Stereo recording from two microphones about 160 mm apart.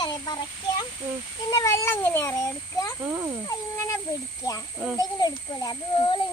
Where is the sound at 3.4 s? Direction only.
20° left (ahead or behind).